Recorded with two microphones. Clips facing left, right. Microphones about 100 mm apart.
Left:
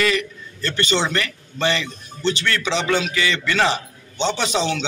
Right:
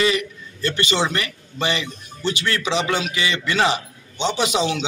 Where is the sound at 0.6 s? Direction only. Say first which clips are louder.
Even; 35° left (ahead or behind).